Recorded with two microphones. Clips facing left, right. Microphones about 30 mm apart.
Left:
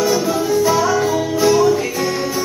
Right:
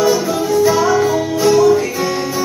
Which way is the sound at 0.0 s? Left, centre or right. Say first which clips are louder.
Right 2 dB; centre.